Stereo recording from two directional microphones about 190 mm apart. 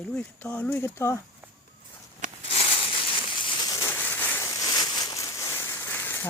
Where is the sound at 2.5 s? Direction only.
30° left (ahead or behind); by 6.2 s 10° left (ahead or behind).